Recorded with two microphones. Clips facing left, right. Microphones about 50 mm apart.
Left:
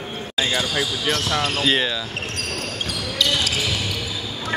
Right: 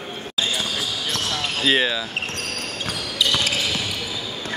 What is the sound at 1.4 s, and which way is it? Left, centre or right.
Speech, centre.